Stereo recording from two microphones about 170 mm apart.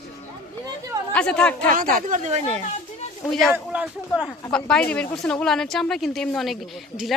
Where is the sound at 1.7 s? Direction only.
50° right (ahead or behind).